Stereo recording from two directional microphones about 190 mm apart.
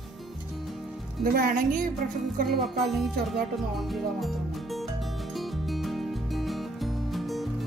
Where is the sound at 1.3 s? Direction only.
45° right (ahead or behind).